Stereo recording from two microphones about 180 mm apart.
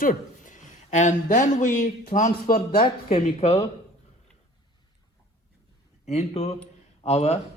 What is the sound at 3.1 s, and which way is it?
Speech, 35° left (ahead or behind).